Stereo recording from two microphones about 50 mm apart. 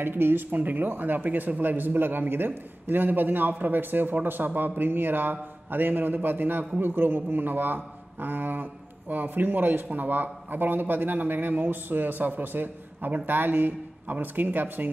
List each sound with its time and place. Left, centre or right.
0.0 s a man's voice: right